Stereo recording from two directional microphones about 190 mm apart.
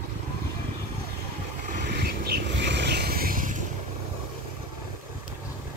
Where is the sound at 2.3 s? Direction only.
65° right (ahead or behind); by 3.6 s 45° right (ahead or behind).